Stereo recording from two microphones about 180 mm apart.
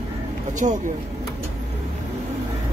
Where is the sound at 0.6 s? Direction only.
45° right (ahead or behind).